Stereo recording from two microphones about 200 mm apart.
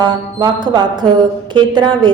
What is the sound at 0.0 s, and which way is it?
A woman's voice, 20° right (ahead or behind).